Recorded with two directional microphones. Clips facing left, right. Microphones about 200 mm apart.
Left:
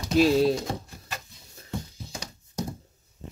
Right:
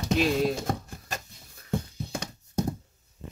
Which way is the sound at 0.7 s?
45° right (ahead or behind).